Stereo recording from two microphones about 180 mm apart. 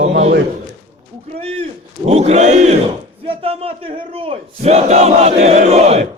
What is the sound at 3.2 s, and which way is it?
A man's voice, 35° right (ahead or behind).